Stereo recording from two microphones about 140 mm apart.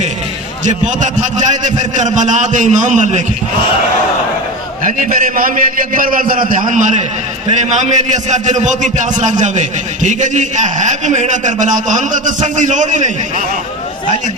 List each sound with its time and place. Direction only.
0.9 s a man's voice: 60° right (ahead or behind)
4.8 s a man's voice: 70° right (ahead or behind)
7.4 s a man's voice: 55° right (ahead or behind)